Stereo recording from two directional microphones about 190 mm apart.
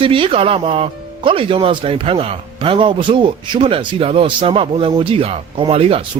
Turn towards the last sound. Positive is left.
turn(degrees=-30)  # may be behind; listen again after turning